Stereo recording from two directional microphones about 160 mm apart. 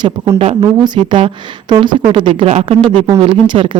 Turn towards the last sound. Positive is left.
turn(degrees=-30)  # may be behind; listen again after turning